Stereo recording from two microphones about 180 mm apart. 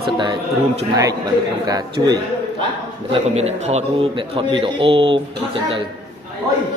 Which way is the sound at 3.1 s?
35° right (ahead or behind).